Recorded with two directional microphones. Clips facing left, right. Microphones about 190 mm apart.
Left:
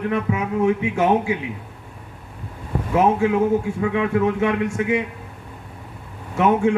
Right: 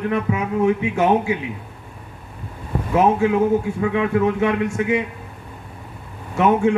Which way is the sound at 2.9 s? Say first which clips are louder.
Right 1 dB; 35° right (ahead or behind).